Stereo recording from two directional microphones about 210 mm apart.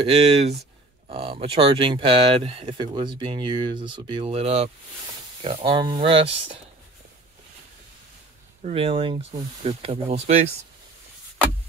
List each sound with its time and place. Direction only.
0.0 s speech: 30° right (ahead or behind)
8.6 s speech: 25° right (ahead or behind)